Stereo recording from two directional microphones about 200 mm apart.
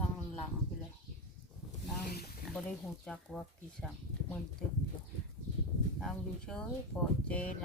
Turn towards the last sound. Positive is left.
turn(degrees=5)  # may be behind; listen again after turning